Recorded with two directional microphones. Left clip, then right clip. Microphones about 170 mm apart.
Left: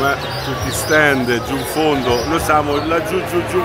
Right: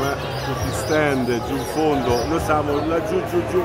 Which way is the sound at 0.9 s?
5° left (ahead or behind).